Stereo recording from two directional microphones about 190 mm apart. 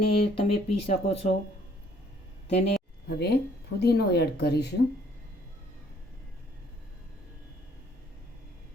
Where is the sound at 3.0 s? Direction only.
60° left (ahead or behind).